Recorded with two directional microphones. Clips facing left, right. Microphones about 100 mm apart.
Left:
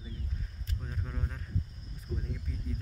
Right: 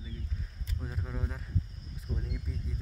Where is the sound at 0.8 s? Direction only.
5° right (ahead or behind).